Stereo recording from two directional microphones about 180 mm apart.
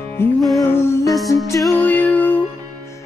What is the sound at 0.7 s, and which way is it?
Music, 15° left (ahead or behind).